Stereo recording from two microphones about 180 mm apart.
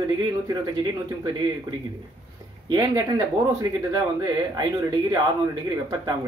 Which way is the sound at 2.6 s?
20° right (ahead or behind).